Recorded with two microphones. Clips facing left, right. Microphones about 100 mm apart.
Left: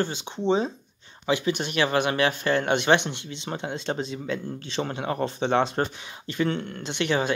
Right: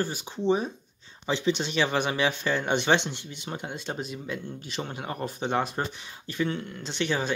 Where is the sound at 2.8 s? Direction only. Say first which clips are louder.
Left 3 dB; 20° left (ahead or behind).